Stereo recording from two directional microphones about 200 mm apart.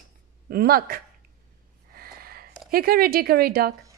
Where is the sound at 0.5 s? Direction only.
50° right (ahead or behind).